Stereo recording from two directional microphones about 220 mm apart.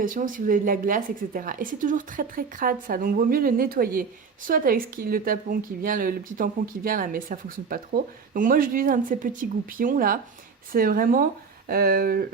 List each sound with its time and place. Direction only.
0.0 s speech: 40° right (ahead or behind)